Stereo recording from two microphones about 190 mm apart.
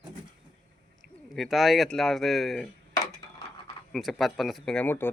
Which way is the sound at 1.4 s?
Centre (ahead or behind).